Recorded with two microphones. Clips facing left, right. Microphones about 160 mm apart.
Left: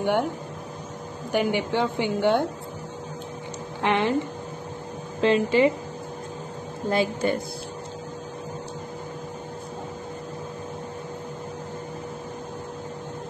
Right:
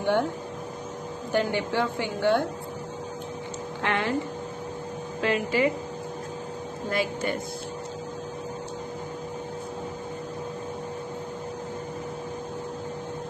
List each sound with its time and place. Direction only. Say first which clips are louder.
0.0 s speech: left 1 dB; 15° left (ahead or behind)
1.3 s a woman's voice: left 2 dB; 15° left (ahead or behind)
3.8 s a woman's voice: left 4 dB; 20° left (ahead or behind)
5.2 s a woman's voice: left 5 dB; 25° left (ahead or behind)
6.9 s a woman's voice: left 5 dB; 30° left (ahead or behind)